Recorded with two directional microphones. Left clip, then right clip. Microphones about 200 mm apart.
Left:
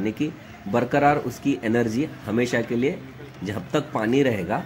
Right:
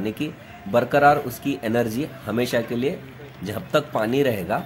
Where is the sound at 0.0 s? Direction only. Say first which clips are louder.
Left 1 dB; 10° right (ahead or behind).